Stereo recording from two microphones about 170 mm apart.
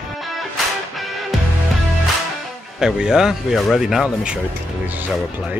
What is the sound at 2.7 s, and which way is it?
Speech, 5° right (ahead or behind).